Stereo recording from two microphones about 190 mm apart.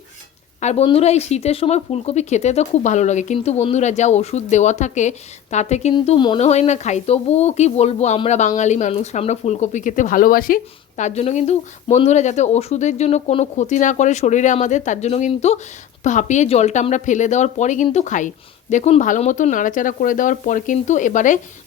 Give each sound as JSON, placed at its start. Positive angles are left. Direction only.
{"t": 0.6, "sound": "speech", "side_deg": 35}
{"t": 5.9, "sound": "speech", "side_deg": 25}